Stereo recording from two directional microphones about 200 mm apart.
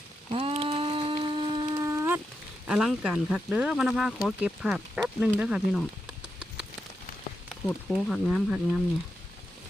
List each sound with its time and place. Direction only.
0.3 s shofar: 30° right (ahead or behind); by 2.2 s 15° right (ahead or behind)
2.6 s speech: 5° right (ahead or behind)
7.9 s speech: 5° right (ahead or behind)